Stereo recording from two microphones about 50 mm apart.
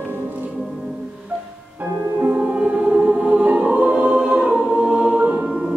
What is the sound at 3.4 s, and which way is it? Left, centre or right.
Music, right.